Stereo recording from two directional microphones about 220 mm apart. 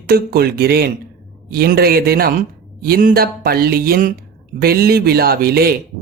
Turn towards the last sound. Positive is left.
turn(degrees=-45)  # may be behind; listen again after turning